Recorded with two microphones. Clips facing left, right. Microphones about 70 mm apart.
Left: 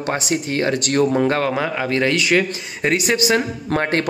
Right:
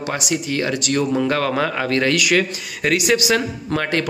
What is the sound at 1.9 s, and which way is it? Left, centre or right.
A man's voice, left.